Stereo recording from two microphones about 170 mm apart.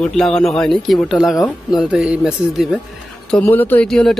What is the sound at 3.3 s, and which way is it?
Speech, 10° left (ahead or behind).